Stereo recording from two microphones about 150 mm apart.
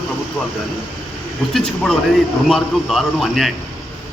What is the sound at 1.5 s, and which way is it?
A man's voice, 5° left (ahead or behind).